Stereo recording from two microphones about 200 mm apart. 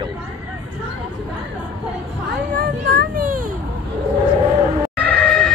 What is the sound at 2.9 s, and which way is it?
Children playing, 40° right (ahead or behind).